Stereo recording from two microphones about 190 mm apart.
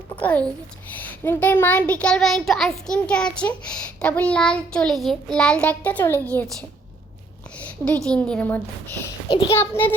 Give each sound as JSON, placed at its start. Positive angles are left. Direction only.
{"t": 0.2, "sound": "a child's voice", "side_deg": 10}
{"t": 8.0, "sound": "a woman's voice", "side_deg": 5}
{"t": 9.3, "sound": "a child's voice", "side_deg": 25}
{"t": 9.6, "sound": "a woman's voice", "side_deg": 10}